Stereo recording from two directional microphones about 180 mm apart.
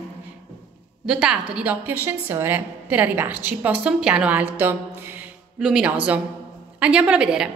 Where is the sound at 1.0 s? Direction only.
5° right (ahead or behind).